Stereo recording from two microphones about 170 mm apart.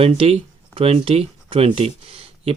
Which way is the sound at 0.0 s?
35° right (ahead or behind).